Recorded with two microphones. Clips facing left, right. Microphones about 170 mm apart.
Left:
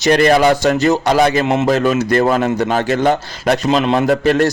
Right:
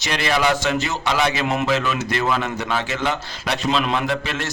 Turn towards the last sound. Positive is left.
turn(degrees=45)  # may be behind; listen again after turning